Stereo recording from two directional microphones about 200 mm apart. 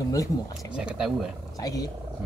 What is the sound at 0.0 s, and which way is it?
Speech, 15° left (ahead or behind).